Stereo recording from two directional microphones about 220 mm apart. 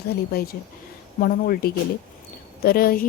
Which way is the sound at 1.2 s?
40° left (ahead or behind).